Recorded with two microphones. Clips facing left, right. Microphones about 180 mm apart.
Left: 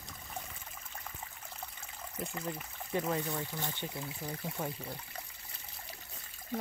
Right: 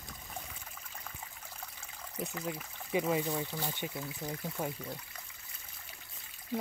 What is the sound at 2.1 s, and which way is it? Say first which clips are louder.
Speech: right 1 dB; 5° right (ahead or behind).